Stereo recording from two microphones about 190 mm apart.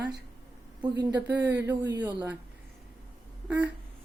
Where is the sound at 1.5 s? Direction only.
65° right (ahead or behind).